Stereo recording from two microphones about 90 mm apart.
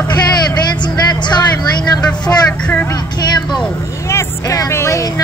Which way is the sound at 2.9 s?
50° left (ahead or behind).